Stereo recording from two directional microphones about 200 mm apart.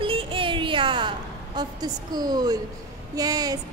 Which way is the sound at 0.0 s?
25° right (ahead or behind).